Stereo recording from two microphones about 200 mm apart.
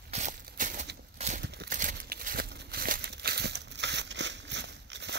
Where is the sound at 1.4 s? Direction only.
55° right (ahead or behind).